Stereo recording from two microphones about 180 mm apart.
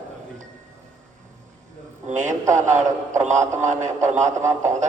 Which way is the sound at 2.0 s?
40° right (ahead or behind).